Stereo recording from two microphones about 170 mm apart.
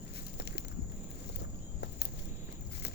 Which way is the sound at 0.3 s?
75° left (ahead or behind).